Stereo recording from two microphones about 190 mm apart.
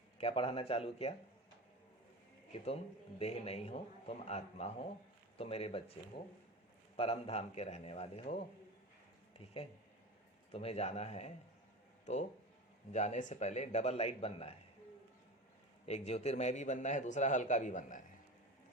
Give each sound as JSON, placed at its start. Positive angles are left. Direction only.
{"t": 0.2, "sound": "a man's voice", "side_deg": 30}
{"t": 3.2, "sound": "a man's voice", "side_deg": 35}
{"t": 10.5, "sound": "a man's voice", "side_deg": 30}
{"t": 12.9, "sound": "a man's voice", "side_deg": 35}
{"t": 15.9, "sound": "a man's voice", "side_deg": 35}